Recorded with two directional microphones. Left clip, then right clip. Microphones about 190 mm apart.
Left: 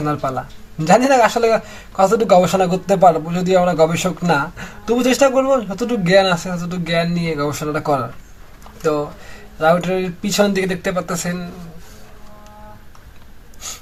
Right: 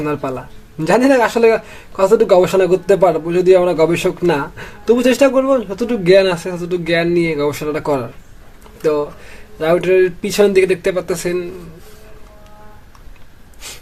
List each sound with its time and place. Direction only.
0.9 s a man's voice: 50° right (ahead or behind)